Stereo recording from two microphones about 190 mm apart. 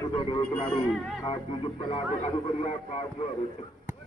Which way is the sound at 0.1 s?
30° left (ahead or behind).